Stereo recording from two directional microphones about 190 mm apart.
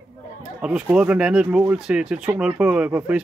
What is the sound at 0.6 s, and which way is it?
Speech, 5° right (ahead or behind).